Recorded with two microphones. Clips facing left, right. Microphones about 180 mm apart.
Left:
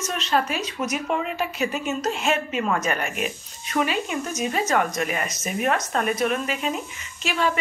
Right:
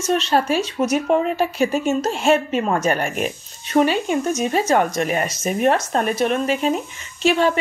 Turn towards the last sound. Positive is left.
turn(degrees=-30)  # may be behind; listen again after turning